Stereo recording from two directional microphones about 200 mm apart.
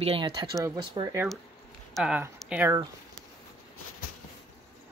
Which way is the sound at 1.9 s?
5° right (ahead or behind).